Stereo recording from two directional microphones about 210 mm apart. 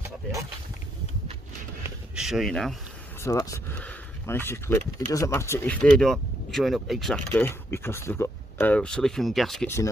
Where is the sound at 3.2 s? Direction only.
15° left (ahead or behind).